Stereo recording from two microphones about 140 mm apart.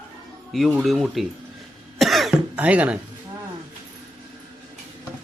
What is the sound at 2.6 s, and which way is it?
Speech, 10° right (ahead or behind).